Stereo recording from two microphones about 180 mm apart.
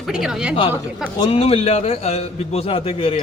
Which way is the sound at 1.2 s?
35° left (ahead or behind).